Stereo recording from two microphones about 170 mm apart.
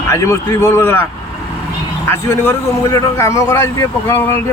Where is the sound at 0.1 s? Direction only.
15° left (ahead or behind).